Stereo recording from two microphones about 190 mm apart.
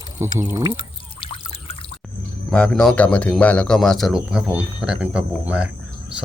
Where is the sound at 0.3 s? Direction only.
15° right (ahead or behind).